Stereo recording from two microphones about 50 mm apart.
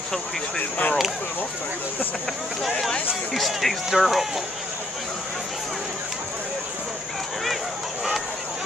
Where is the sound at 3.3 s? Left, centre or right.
Centre.